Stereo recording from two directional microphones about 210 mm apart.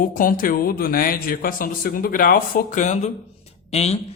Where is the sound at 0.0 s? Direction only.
40° left (ahead or behind).